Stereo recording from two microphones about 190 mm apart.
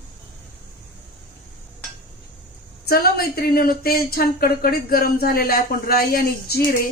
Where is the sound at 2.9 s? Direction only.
55° left (ahead or behind).